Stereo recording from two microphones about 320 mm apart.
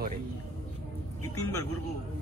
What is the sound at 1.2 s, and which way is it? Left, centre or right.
Speech, left.